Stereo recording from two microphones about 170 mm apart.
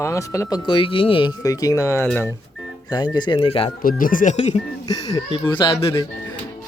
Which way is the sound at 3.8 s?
55° left (ahead or behind).